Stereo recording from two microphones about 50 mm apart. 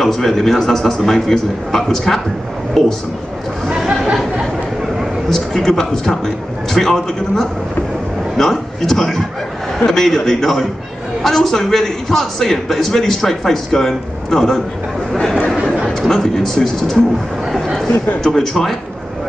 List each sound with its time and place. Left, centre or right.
0.0 s a man's voice: centre
3.6 s chatter: centre
5.3 s a man's voice: centre
15.3 s a sound: centre
16.0 s a man's voice: centre